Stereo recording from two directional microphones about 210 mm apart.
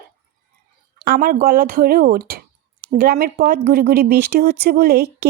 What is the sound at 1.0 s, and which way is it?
A woman's voice, 45° right (ahead or behind).